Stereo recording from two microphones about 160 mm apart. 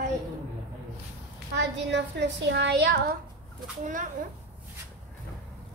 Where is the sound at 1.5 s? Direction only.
90° right.